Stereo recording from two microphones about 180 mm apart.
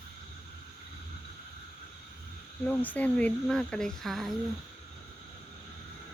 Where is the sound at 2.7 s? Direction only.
10° left (ahead or behind).